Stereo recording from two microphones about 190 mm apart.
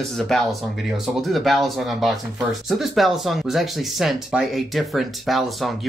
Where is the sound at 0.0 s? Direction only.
Centre (ahead or behind).